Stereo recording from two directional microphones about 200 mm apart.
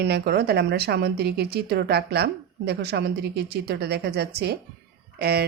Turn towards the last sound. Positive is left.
turn(degrees=-50)  # may be behind; listen again after turning